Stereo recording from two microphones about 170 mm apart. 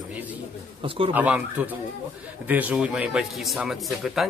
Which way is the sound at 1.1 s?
10° right (ahead or behind).